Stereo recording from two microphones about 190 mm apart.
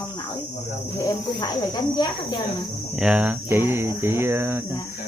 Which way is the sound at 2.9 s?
5° right (ahead or behind).